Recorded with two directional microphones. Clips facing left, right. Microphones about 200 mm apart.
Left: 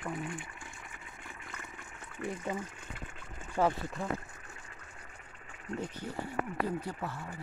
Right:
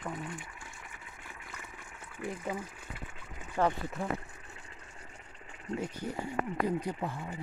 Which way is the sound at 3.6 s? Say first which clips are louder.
Even; 10° left (ahead or behind).